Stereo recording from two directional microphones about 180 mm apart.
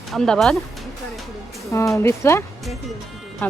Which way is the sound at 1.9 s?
15° left (ahead or behind).